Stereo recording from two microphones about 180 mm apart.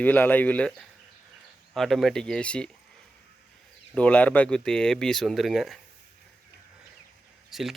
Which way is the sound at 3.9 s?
10° left (ahead or behind).